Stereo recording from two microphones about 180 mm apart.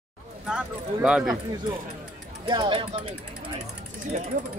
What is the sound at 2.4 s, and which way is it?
Speech, 25° right (ahead or behind).